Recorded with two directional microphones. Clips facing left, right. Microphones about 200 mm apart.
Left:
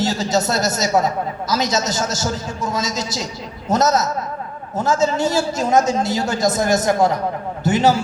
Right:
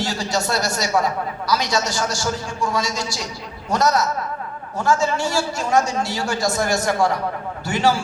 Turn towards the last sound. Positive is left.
turn(degrees=20)  # may be behind; listen again after turning